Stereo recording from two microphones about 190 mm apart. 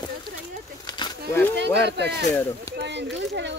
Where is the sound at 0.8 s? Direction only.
20° left (ahead or behind).